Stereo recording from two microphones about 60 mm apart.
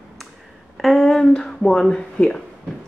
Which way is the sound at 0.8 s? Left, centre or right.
Centre.